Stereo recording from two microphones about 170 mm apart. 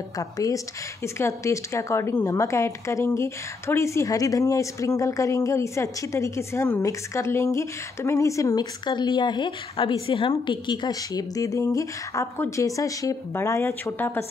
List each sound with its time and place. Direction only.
0.2 s a woman's voice: 20° left (ahead or behind)